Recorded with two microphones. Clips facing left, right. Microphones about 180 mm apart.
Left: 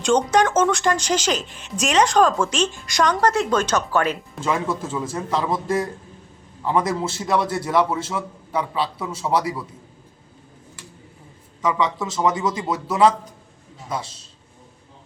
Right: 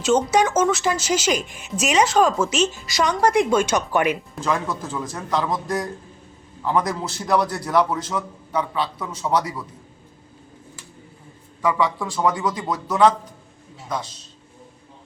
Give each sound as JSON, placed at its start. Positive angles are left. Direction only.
{"t": 0.0, "sound": "speech", "side_deg": -5}
{"t": 4.4, "sound": "a man's voice", "side_deg": 5}
{"t": 11.6, "sound": "speech", "side_deg": 20}
{"t": 12.6, "sound": "a man's voice", "side_deg": 5}